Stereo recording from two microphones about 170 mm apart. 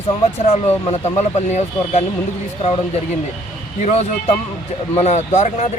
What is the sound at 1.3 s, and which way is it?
Speech, 40° left (ahead or behind).